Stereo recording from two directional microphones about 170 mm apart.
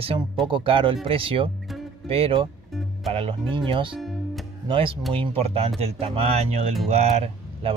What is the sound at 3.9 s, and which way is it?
Music, centre (ahead or behind).